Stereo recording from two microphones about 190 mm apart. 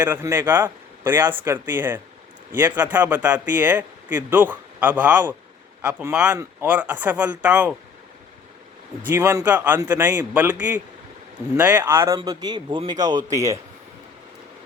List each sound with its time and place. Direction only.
0.0 s speech: 10° right (ahead or behind)
9.0 s speech: 10° right (ahead or behind)